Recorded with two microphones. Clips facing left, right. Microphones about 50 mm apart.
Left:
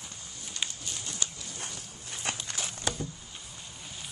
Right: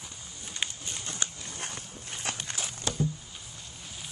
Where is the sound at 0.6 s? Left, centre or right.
Centre.